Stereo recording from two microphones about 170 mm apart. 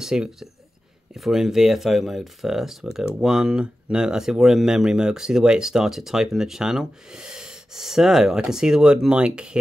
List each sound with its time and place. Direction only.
0.0 s speech: 5° right (ahead or behind)